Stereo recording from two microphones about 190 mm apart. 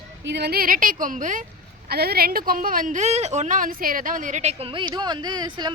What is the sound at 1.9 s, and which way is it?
A woman's voice, 55° right (ahead or behind).